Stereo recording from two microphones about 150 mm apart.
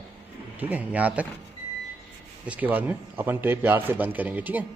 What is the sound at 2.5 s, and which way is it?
Speech, 10° right (ahead or behind).